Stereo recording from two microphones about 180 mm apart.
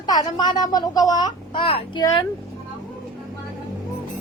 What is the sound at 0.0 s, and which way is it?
A woman's voice, 20° left (ahead or behind).